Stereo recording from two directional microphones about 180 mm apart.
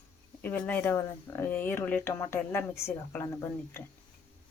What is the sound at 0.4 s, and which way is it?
Speech, 5° left (ahead or behind).